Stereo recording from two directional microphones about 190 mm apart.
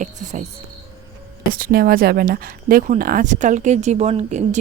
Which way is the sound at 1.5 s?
50° right (ahead or behind).